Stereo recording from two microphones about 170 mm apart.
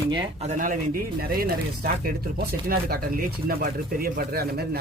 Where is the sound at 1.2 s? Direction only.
60° right (ahead or behind).